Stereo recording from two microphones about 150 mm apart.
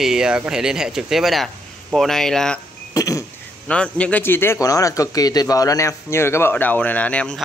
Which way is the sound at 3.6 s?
10° left (ahead or behind).